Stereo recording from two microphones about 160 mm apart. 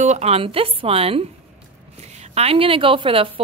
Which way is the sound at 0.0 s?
45° right (ahead or behind).